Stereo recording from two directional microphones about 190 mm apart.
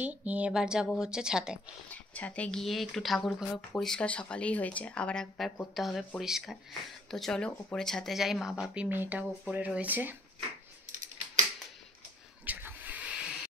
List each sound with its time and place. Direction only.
0.0 s speech: 10° right (ahead or behind)
1.9 s speech: 10° left (ahead or behind); by 10.1 s 10° right (ahead or behind)
12.4 s a sound: 10° right (ahead or behind)